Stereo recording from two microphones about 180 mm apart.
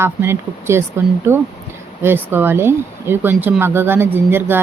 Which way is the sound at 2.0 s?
10° right (ahead or behind).